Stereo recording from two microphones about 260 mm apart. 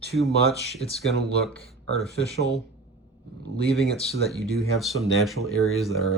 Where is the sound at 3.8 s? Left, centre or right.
Right.